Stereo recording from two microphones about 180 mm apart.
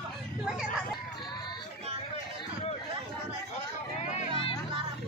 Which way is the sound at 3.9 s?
40° left (ahead or behind).